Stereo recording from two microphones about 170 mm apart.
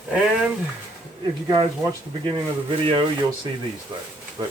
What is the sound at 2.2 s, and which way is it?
Speech, 30° right (ahead or behind).